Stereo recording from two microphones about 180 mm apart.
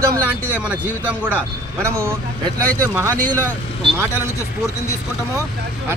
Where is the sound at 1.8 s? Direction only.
15° right (ahead or behind).